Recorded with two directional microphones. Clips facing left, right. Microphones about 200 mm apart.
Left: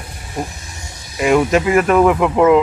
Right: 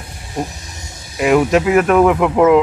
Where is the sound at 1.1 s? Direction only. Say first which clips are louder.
Right 1 dB; centre (ahead or behind).